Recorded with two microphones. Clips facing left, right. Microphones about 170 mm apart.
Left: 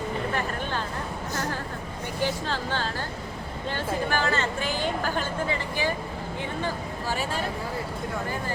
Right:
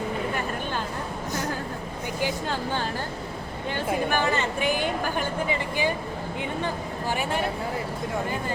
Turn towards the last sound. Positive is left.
turn(degrees=-15)  # may be behind; listen again after turning